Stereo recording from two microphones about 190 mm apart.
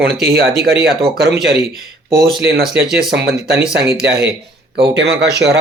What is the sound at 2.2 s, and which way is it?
Speech, 55° right (ahead or behind).